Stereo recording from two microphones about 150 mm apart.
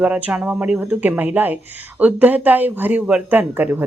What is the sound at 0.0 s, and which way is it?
Speech, 10° right (ahead or behind).